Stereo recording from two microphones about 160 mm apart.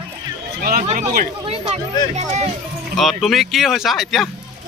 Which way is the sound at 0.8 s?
60° right (ahead or behind).